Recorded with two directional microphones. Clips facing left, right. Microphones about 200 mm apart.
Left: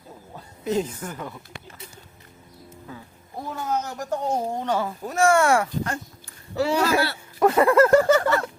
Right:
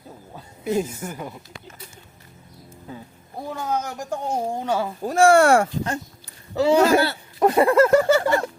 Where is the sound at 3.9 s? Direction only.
10° right (ahead or behind).